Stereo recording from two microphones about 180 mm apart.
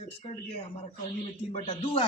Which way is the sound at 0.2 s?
35° left (ahead or behind).